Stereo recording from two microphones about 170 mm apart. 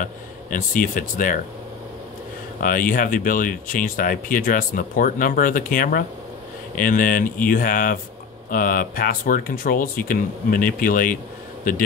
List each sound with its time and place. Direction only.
0.0 s speech: 50° left (ahead or behind)
2.6 s speech: 55° left (ahead or behind)